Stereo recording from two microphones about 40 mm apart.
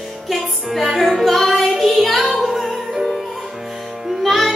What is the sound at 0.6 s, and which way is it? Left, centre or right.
Music, centre.